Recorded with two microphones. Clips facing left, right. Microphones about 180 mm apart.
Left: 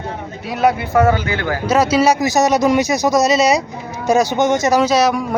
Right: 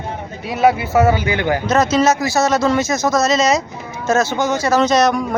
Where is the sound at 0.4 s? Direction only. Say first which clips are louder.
Right 1 dB; centre (ahead or behind); by 1.6 s 20° right (ahead or behind).